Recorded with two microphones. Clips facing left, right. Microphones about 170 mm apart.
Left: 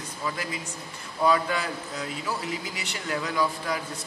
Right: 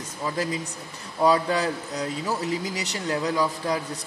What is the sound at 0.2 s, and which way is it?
A man's voice, 35° right (ahead or behind).